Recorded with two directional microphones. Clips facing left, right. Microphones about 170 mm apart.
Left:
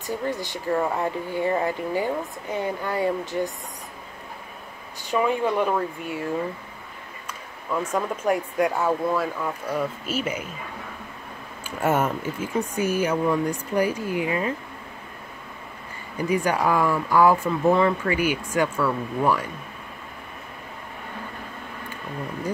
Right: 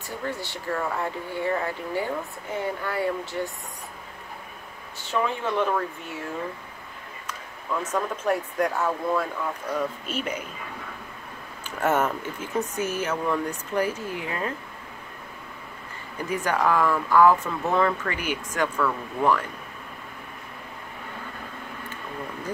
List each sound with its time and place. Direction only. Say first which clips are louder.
0.0 s speech: left 4 dB; 15° left (ahead or behind)
5.0 s speech: left 4 dB; 10° left (ahead or behind)
7.2 s speech: left 1 dB; 10° left (ahead or behind)
11.8 s speech: left 1 dB; 10° left (ahead or behind)
16.3 s speech: left 2 dB; 10° left (ahead or behind)